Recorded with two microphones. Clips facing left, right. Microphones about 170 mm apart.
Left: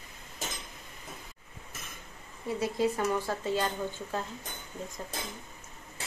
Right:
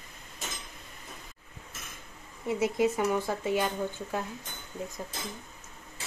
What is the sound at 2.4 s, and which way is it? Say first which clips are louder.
Speech: right 2 dB; 20° right (ahead or behind).